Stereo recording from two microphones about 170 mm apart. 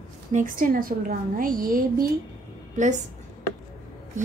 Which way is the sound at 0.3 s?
50° right (ahead or behind).